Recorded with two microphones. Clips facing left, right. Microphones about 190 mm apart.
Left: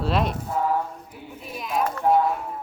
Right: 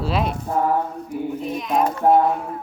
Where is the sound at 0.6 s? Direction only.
50° right (ahead or behind).